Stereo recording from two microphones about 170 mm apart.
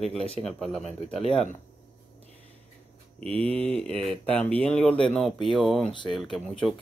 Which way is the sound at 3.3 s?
35° right (ahead or behind).